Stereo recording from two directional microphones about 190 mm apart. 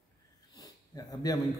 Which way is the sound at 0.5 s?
20° left (ahead or behind).